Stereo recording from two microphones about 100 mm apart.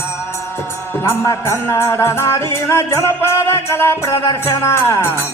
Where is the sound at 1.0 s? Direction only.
25° left (ahead or behind).